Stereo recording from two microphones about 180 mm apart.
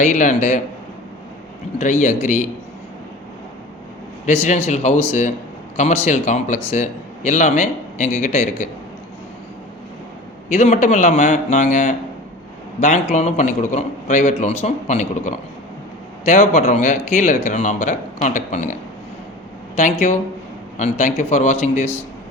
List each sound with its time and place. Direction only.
0.0 s a man's voice: 45° left (ahead or behind)
1.8 s a man's voice: 40° left (ahead or behind)
4.4 s a man's voice: 40° left (ahead or behind)
10.5 s a man's voice: 40° left (ahead or behind)
19.7 s a man's voice: 40° left (ahead or behind)